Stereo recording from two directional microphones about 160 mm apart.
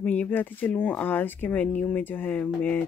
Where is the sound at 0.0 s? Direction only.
10° left (ahead or behind).